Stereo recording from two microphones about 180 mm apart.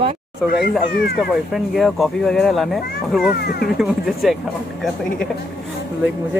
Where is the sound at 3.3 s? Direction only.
60° left (ahead or behind).